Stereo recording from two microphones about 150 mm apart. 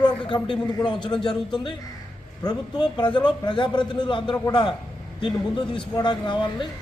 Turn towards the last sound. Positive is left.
turn(degrees=30)  # may be behind; listen again after turning